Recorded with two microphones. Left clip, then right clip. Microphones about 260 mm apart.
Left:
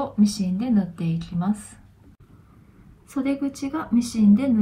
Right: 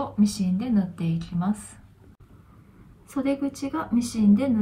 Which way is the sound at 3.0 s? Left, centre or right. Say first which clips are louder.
Left 1 dB; centre.